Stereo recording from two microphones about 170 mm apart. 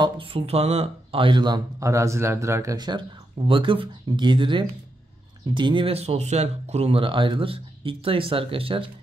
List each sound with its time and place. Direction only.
0.0 s speech: 30° right (ahead or behind)